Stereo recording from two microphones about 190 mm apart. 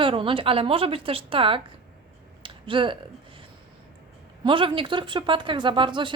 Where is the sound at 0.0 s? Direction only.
25° right (ahead or behind).